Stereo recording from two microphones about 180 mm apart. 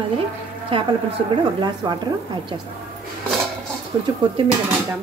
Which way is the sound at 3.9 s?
25° right (ahead or behind).